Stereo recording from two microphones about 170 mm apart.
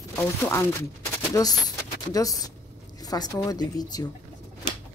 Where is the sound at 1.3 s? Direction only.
20° left (ahead or behind).